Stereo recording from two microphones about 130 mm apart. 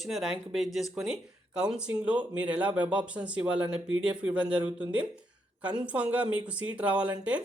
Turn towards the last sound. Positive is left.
turn(degrees=-10)  # may be behind; listen again after turning